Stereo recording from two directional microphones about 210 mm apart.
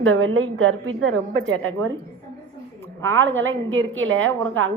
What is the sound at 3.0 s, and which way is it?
A woman's voice, 65° right (ahead or behind).